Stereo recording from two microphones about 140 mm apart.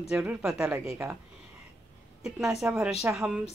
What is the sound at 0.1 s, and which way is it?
Speech, 10° right (ahead or behind).